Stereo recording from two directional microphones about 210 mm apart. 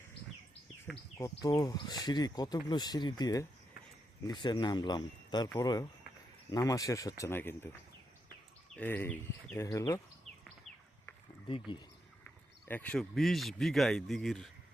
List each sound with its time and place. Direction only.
0.9 s speech: centre (ahead or behind)
1.2 s speech: 15° left (ahead or behind)
8.7 s speech: 10° left (ahead or behind)
12.6 s speech: 10° left (ahead or behind)